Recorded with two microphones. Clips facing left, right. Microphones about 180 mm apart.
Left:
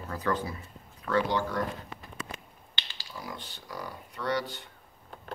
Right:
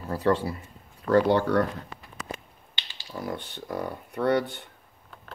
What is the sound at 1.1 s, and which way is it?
Speech, 55° right (ahead or behind).